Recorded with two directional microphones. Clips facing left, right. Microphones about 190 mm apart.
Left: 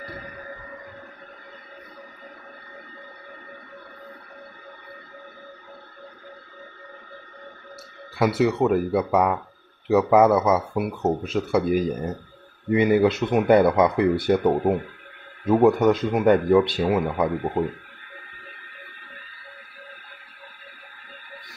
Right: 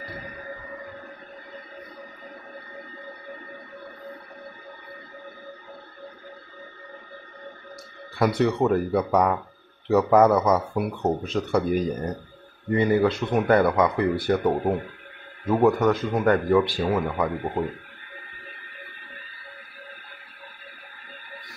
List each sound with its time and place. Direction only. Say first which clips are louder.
8.2 s speech: left 1 dB; 5° left (ahead or behind)
12.7 s speech: left 2 dB; 15° left (ahead or behind)